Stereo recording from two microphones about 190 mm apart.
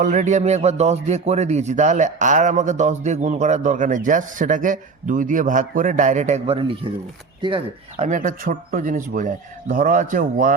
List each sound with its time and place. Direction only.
0.0 s a man's voice: 40° right (ahead or behind)